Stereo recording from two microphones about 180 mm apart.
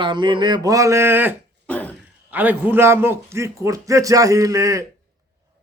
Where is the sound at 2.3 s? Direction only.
10° right (ahead or behind).